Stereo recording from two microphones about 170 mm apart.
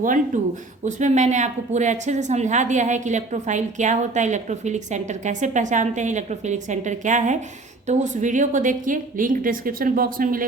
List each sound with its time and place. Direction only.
0.3 s a woman's voice: 50° right (ahead or behind)